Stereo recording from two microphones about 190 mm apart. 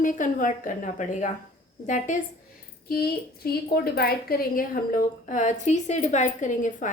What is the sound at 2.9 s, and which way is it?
A woman's voice, 55° left (ahead or behind).